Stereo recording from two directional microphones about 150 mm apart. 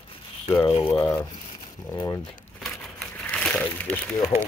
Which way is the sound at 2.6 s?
5° left (ahead or behind).